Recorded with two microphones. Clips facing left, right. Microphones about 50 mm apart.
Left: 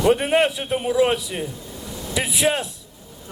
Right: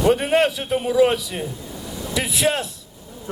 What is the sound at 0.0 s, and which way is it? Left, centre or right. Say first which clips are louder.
A man's voice: even; centre.